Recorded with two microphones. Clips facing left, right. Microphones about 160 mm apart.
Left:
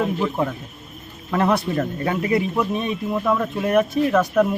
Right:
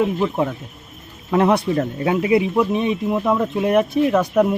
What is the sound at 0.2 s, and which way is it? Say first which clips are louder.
Speech: right 2 dB; 15° right (ahead or behind).